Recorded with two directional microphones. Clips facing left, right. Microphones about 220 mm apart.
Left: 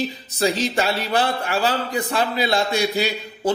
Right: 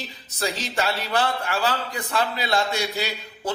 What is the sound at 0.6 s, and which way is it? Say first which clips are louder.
A man's voice: left 5 dB; 15° left (ahead or behind).